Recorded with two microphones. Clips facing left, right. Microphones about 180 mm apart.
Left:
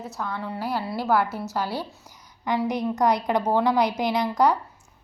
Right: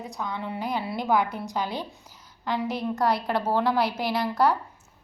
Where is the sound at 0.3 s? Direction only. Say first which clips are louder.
Left 1 dB; centre (ahead or behind).